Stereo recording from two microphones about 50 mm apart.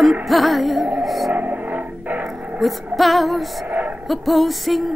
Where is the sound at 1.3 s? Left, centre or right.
Right.